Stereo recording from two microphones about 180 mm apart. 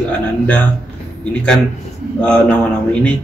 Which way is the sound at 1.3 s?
5° left (ahead or behind).